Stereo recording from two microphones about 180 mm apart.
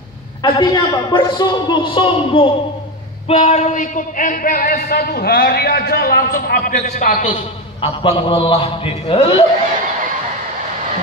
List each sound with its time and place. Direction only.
0.4 s a man's voice: 25° left (ahead or behind)